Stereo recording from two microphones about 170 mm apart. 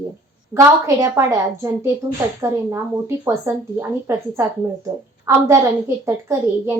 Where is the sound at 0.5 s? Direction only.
20° right (ahead or behind).